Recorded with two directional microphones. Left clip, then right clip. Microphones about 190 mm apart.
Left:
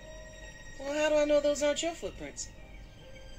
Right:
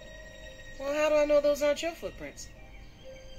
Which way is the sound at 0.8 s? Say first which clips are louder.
Right 2 dB; centre (ahead or behind).